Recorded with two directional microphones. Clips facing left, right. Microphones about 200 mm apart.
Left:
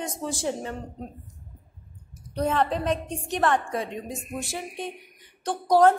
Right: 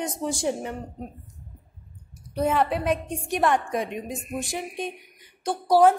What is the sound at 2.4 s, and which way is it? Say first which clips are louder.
A woman's voice: right 1 dB; 10° right (ahead or behind).